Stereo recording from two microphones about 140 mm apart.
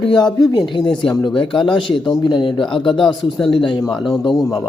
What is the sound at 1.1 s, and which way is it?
A man's voice, 35° left (ahead or behind).